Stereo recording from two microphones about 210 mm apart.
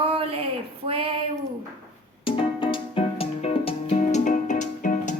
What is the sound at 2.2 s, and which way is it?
Music, 25° left (ahead or behind).